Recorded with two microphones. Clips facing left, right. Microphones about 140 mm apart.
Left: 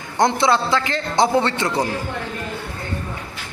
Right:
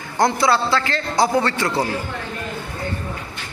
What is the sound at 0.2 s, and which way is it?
A man's voice, 20° left (ahead or behind).